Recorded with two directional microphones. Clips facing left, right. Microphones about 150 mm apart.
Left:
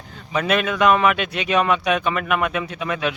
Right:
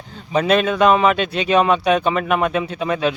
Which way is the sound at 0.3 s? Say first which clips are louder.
Right 4 dB; 30° right (ahead or behind).